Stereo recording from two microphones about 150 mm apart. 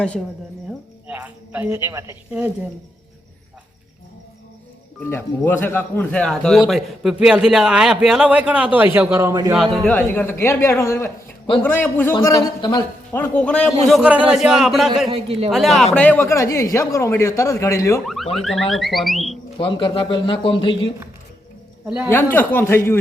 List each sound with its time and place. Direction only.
1.0 s a man's voice: 10° right (ahead or behind)
4.9 s a man's voice: 15° left (ahead or behind); by 9.5 s 20° right (ahead or behind)
9.7 s speech: 5° left (ahead or behind)
12.2 s speech: 25° left (ahead or behind)
13.1 s speech: 10° left (ahead or behind)
13.8 s a man's voice: 5° right (ahead or behind)
15.1 s a man's voice: 40° right (ahead or behind)
15.4 s speech: centre (ahead or behind); by 18.0 s 20° left (ahead or behind)
18.0 s a man's voice: centre (ahead or behind)
19.5 s a man's voice: 35° left (ahead or behind)
22.1 s speech: 15° left (ahead or behind)